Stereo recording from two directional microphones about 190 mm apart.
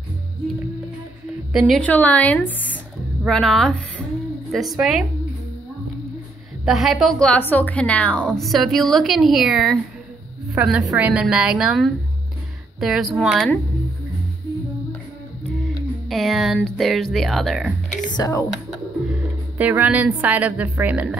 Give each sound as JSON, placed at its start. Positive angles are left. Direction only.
{"t": 1.5, "sound": "a woman's voice", "side_deg": 0}
{"t": 6.6, "sound": "speech", "side_deg": 0}
{"t": 16.1, "sound": "speech", "side_deg": 0}
{"t": 18.1, "sound": "a woman's voice", "side_deg": 20}
{"t": 19.6, "sound": "a woman's voice", "side_deg": -10}